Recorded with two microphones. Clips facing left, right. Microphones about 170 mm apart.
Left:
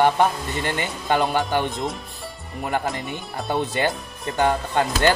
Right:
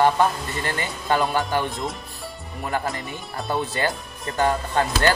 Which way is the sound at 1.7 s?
Centre (ahead or behind).